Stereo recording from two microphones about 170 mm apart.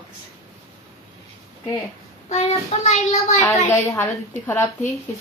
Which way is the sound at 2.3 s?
40° left (ahead or behind).